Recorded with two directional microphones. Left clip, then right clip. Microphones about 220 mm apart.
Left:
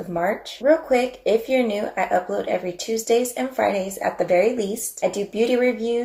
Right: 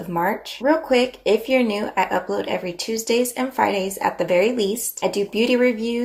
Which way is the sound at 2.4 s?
40° right (ahead or behind).